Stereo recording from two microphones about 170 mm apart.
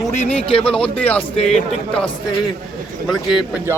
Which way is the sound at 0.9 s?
10° left (ahead or behind).